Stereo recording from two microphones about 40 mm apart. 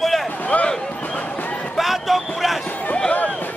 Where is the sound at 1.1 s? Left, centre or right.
Left.